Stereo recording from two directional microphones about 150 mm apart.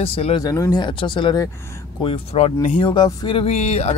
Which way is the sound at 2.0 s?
40° left (ahead or behind).